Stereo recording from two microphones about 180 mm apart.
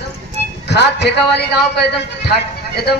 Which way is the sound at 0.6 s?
70° left (ahead or behind).